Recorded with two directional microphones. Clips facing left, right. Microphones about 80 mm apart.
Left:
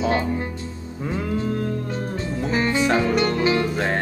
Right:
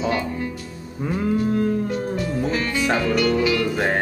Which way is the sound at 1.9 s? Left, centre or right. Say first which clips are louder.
Right 3 dB; left.